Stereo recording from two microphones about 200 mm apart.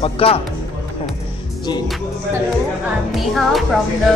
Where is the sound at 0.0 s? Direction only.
30° left (ahead or behind).